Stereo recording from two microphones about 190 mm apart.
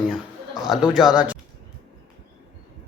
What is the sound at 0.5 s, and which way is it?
Speech, centre (ahead or behind).